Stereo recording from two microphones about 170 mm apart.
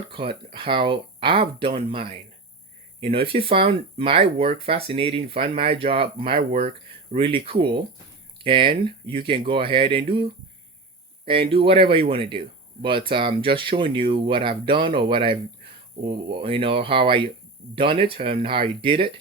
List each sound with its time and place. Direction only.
0.1 s speech: 30° right (ahead or behind)
11.3 s speech: 35° right (ahead or behind)